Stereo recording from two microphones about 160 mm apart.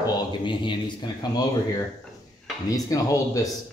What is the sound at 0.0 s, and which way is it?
Speech, 30° left (ahead or behind).